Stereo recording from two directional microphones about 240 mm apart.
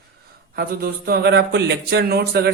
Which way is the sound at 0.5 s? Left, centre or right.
Right.